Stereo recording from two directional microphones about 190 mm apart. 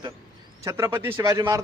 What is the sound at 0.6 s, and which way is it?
Speech, 15° right (ahead or behind).